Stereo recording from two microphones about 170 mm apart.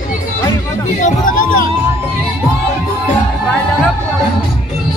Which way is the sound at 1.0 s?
50° left (ahead or behind).